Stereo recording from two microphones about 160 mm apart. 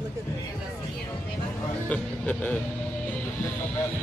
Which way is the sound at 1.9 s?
10° left (ahead or behind).